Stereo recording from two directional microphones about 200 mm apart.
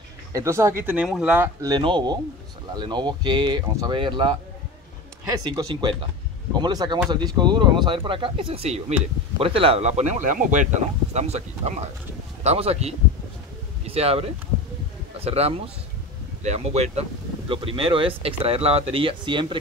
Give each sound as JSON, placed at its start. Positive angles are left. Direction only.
{"t": 0.3, "sound": "speech", "side_deg": -15}
{"t": 1.3, "sound": "speech", "side_deg": -15}
{"t": 5.4, "sound": "speech", "side_deg": -20}